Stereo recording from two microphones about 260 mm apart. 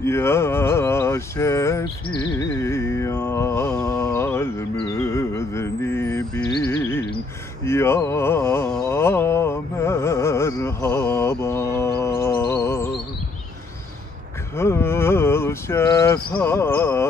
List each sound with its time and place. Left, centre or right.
0.0 s a sound: centre
11.4 s music: centre
14.6 s cricket: centre